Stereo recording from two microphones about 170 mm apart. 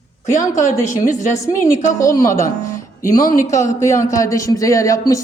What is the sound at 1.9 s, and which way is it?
Speech, 20° left (ahead or behind).